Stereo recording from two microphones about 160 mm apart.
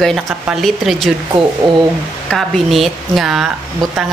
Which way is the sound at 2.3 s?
Centre (ahead or behind).